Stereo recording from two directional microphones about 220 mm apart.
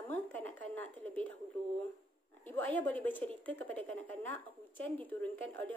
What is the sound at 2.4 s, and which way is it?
A woman's voice, 10° left (ahead or behind).